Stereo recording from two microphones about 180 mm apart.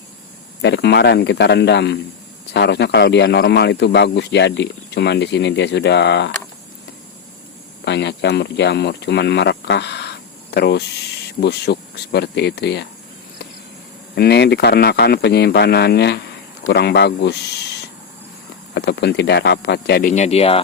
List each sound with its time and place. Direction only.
0.6 s a man's voice: 70° left (ahead or behind)
7.9 s a man's voice: 70° left (ahead or behind)
14.2 s a man's voice: 65° left (ahead or behind)
18.7 s a man's voice: 70° left (ahead or behind)
20.1 s speech: 40° left (ahead or behind)